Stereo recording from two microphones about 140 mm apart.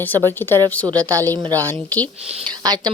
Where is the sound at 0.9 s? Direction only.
25° right (ahead or behind).